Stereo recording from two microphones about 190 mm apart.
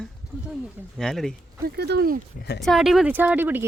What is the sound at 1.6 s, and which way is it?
Speech, 60° right (ahead or behind).